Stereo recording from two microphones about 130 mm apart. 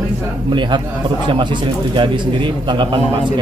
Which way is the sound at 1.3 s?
40° right (ahead or behind).